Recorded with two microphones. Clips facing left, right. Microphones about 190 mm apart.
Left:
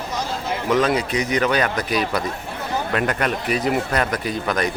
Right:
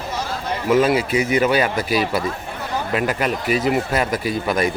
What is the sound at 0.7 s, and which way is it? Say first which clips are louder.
Speech: right 3 dB; 5° right (ahead or behind).